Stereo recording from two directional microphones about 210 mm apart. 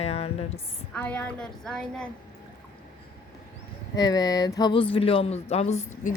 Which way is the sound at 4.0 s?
20° left (ahead or behind).